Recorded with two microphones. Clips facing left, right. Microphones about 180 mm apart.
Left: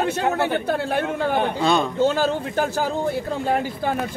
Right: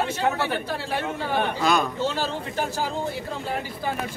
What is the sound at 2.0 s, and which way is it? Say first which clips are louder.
Speech: left 7 dB; 50° left (ahead or behind).